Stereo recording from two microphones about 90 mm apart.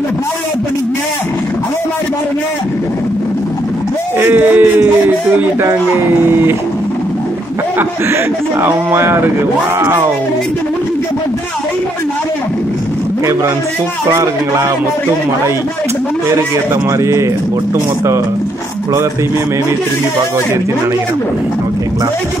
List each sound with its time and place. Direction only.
4.2 s a sound: 25° right (ahead or behind)
8.6 s speech: 25° right (ahead or behind)
17.0 s speech: 30° right (ahead or behind)